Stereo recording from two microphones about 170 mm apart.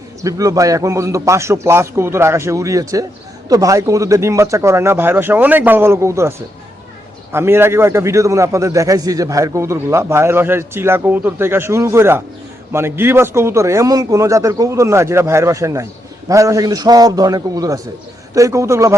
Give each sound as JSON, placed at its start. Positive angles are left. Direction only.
{"t": 0.2, "sound": "a man's voice", "side_deg": -20}
{"t": 7.3, "sound": "a man's voice", "side_deg": -15}